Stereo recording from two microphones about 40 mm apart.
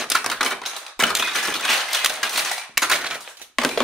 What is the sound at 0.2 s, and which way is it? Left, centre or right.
Typewriter, centre.